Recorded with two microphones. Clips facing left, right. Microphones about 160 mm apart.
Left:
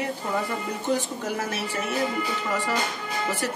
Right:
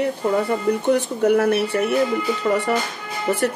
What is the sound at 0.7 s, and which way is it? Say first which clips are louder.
Speech: right 8 dB; 60° right (ahead or behind).